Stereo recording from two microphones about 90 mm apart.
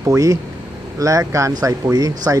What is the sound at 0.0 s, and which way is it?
Speech, 40° right (ahead or behind).